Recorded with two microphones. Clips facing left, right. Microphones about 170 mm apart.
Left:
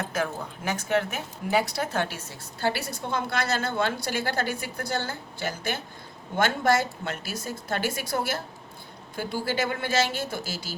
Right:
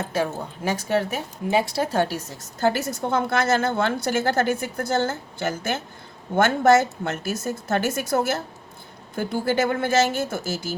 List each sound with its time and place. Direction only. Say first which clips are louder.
0.0 s a woman's voice: right 4 dB; 30° right (ahead or behind); by 10.8 s 45° right (ahead or behind)